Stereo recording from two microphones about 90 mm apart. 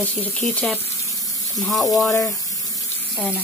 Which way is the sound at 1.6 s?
Centre (ahead or behind).